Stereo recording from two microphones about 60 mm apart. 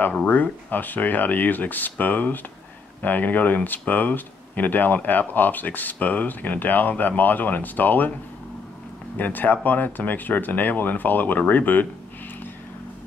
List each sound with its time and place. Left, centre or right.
0.1 s speech: left
9.2 s speech: left